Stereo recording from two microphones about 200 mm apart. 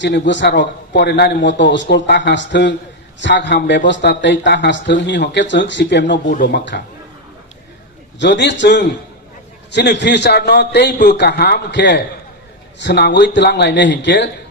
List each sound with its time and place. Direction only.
0.0 s a man's voice: 65° left (ahead or behind)
8.2 s a man's voice: 60° left (ahead or behind)